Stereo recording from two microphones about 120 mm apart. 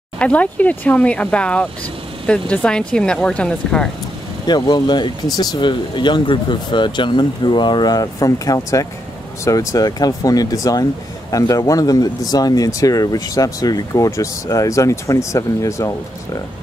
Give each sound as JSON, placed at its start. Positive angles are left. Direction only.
{"t": 0.2, "sound": "speech", "side_deg": 10}
{"t": 4.5, "sound": "speech", "side_deg": 35}